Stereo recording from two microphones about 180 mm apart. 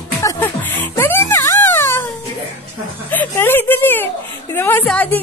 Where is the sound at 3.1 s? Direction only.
10° left (ahead or behind).